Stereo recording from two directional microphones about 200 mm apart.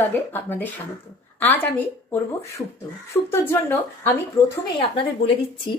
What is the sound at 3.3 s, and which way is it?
A woman's voice, 10° left (ahead or behind).